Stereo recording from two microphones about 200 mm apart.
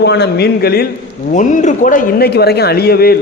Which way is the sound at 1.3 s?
40° left (ahead or behind).